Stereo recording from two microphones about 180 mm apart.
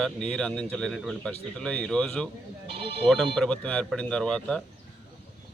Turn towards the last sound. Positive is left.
turn(degrees=5)  # may be behind; listen again after turning